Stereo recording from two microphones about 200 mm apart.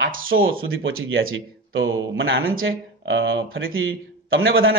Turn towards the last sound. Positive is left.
turn(degrees=-85)